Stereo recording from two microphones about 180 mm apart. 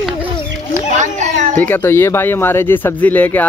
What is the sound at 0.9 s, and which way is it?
Children playing, 40° right (ahead or behind).